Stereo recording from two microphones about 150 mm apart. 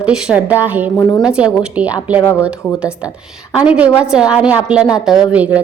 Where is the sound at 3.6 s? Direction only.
5° right (ahead or behind).